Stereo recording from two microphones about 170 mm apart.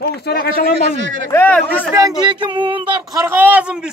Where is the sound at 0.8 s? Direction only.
90° right.